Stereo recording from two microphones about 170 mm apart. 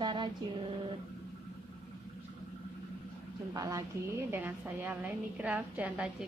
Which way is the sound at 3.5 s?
20° right (ahead or behind).